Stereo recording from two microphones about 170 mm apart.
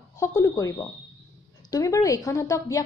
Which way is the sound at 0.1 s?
15° left (ahead or behind).